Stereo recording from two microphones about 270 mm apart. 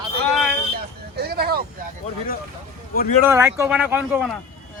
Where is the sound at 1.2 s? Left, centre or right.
Right.